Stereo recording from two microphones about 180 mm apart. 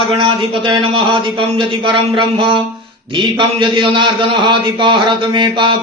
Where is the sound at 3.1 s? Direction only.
25° right (ahead or behind).